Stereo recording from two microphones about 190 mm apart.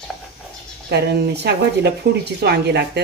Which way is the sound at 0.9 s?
60° right (ahead or behind).